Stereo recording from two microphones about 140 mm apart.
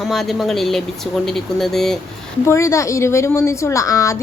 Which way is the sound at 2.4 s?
20° left (ahead or behind).